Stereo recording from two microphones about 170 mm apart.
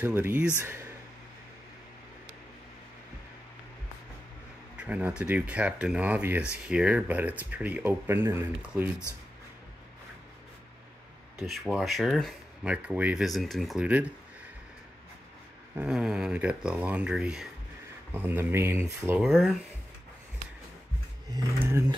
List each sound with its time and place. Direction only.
0.0 s speech: 10° right (ahead or behind)
4.7 s speech: 10° right (ahead or behind)
11.4 s speech: centre (ahead or behind)
15.7 s speech: 5° right (ahead or behind)
19.2 s speech: centre (ahead or behind)
21.5 s speech: 15° right (ahead or behind)